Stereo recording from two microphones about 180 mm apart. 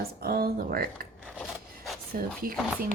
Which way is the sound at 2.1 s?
55° right (ahead or behind).